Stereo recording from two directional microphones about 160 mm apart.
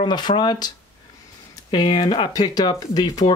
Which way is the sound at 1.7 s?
25° left (ahead or behind).